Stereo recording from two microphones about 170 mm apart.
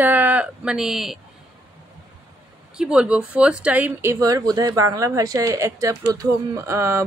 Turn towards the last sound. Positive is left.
turn(degrees=-15)  # may be behind; listen again after turning